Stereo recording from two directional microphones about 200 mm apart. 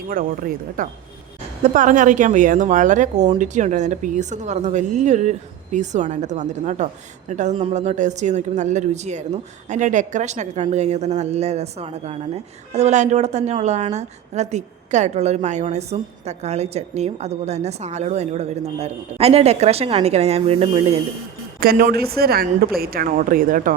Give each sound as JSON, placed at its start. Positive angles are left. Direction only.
{"t": 0.1, "sound": "a woman's voice", "side_deg": -45}
{"t": 21.6, "sound": "a woman's voice", "side_deg": -45}